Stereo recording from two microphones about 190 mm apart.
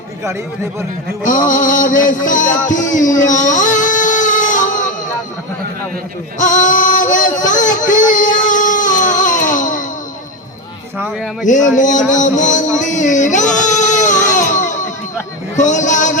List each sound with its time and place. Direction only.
0.3 s speech: 15° right (ahead or behind)
1.2 s music: 45° left (ahead or behind)
6.4 s a sound: 40° left (ahead or behind)
10.9 s speech: 10° right (ahead or behind)
11.4 s speech: 40° left (ahead or behind)
13.6 s music: 40° left (ahead or behind)
15.5 s speech: 40° left (ahead or behind)